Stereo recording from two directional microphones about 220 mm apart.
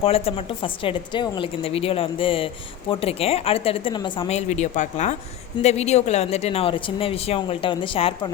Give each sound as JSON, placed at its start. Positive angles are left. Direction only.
{"t": 0.0, "sound": "speech", "side_deg": 25}